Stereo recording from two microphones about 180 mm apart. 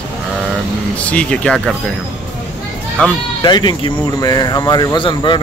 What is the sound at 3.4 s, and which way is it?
Speech, 25° left (ahead or behind).